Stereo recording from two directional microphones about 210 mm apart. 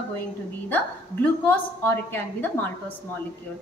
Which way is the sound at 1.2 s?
5° left (ahead or behind).